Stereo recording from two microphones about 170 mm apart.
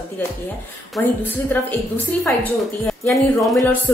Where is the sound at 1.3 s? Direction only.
10° left (ahead or behind).